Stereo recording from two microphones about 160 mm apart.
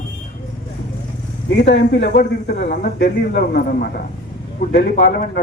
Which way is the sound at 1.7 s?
80° left.